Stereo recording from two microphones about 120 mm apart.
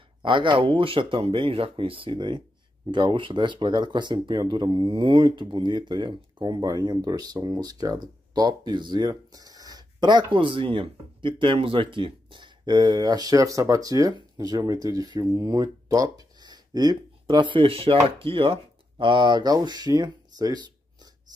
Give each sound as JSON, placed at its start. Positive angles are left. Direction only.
{"t": 0.2, "sound": "speech", "side_deg": -45}